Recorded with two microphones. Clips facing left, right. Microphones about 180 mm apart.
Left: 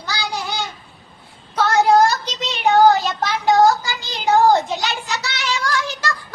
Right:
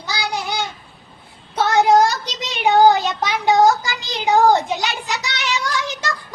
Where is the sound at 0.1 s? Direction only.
15° right (ahead or behind).